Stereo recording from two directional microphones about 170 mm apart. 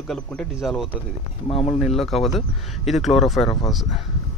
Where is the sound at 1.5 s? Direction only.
35° left (ahead or behind).